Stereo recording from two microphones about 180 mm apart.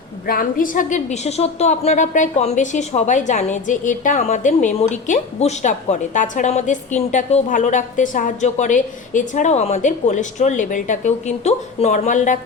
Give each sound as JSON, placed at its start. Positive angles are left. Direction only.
{"t": 0.3, "sound": "a woman's voice", "side_deg": 50}